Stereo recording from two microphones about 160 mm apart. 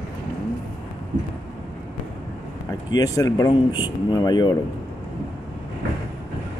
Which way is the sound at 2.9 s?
20° left (ahead or behind).